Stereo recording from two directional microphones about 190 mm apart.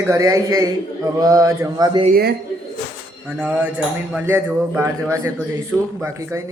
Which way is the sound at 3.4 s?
10° right (ahead or behind).